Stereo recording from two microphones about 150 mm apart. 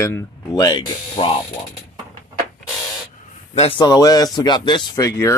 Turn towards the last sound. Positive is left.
turn(degrees=20)  # may be behind; listen again after turning